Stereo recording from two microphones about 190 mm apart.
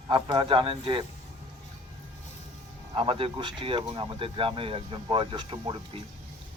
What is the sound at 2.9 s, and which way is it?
Speech, 30° right (ahead or behind).